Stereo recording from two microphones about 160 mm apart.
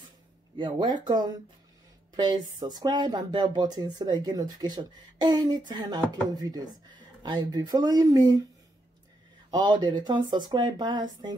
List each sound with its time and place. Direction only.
0.6 s speech: 30° right (ahead or behind)
9.5 s speech: 30° right (ahead or behind)